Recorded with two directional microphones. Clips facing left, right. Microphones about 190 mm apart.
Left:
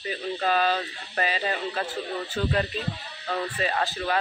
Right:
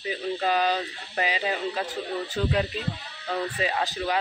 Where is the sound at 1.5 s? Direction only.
Centre (ahead or behind).